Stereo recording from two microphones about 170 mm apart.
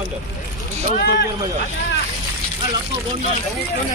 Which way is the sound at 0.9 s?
70° left (ahead or behind).